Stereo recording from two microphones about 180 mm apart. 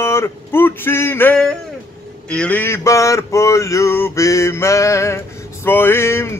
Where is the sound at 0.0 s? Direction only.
15° left (ahead or behind).